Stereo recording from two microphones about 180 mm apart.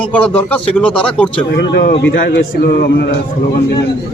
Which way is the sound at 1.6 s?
70° left (ahead or behind).